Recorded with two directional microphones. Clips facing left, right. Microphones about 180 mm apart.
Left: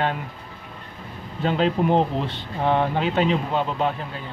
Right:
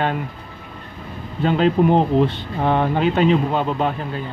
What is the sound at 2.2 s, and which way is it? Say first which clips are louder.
Speech: right 3 dB; 50° right (ahead or behind).